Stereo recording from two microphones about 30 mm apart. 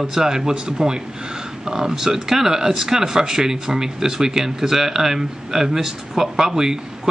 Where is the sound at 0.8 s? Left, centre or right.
Right.